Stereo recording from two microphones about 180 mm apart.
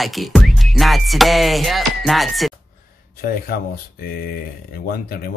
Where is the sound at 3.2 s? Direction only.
55° left (ahead or behind).